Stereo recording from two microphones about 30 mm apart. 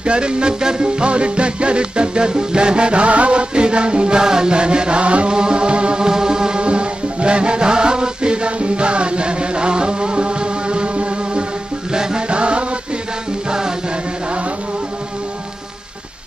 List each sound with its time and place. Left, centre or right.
0.0 s music: right
4.2 s music: right
6.0 s music: right
11.9 s music: right
13.5 s music: right